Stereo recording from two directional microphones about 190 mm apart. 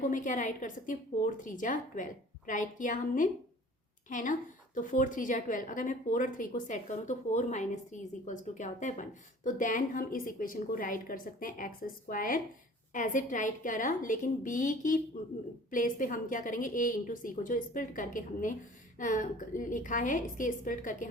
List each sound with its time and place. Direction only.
0.1 s a woman's voice: 40° left (ahead or behind)